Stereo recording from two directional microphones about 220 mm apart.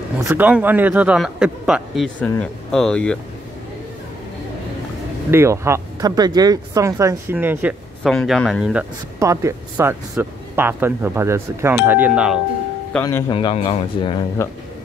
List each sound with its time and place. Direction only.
0.2 s a man's voice: 10° right (ahead or behind)
5.3 s speech: 10° right (ahead or behind)
9.2 s speech: 15° right (ahead or behind)
13.0 s a man's voice: 20° left (ahead or behind)
14.4 s speech: 10° left (ahead or behind)